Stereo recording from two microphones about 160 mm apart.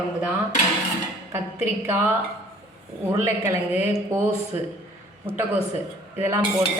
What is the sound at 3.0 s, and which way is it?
A woman's voice, 15° right (ahead or behind).